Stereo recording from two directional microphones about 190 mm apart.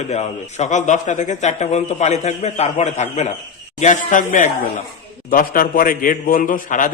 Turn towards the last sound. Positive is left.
turn(degrees=45)  # may be behind; listen again after turning